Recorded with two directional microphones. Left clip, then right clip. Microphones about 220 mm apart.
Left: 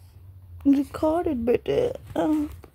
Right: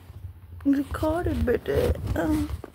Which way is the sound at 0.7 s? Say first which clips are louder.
Left 3 dB; 20° left (ahead or behind).